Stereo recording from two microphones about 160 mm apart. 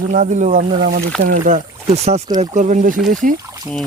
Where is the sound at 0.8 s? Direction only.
80° right.